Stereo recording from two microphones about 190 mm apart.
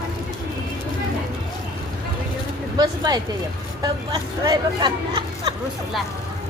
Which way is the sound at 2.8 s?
20° right (ahead or behind).